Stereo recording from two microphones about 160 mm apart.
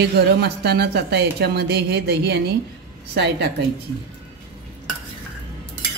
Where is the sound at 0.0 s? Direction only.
90° right.